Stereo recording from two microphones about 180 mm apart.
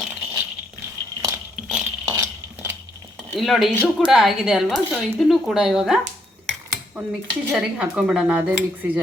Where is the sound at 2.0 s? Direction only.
15° right (ahead or behind).